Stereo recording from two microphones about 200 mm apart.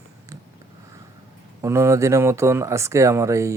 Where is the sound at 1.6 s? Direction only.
15° right (ahead or behind).